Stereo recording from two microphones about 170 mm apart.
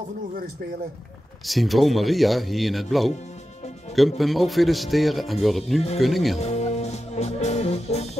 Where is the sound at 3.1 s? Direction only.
40° left (ahead or behind).